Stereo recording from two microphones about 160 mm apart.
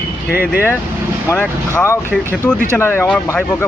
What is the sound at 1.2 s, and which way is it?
Speech, 10° left (ahead or behind).